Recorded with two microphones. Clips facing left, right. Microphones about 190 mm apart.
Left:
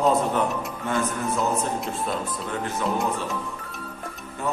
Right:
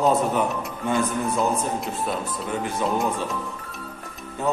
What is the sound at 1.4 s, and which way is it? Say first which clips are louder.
Speech: even; centre (ahead or behind).